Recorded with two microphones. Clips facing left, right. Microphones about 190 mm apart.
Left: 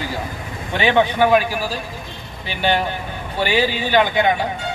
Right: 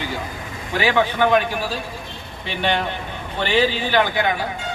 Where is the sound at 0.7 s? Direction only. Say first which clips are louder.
Left 3 dB; 20° left (ahead or behind).